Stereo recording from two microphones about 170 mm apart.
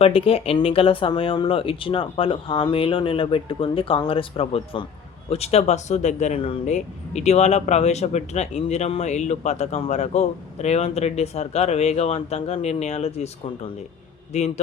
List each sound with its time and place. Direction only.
0.0 s speech: 35° left (ahead or behind)